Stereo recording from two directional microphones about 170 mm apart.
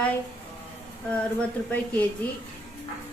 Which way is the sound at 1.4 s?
10° left (ahead or behind).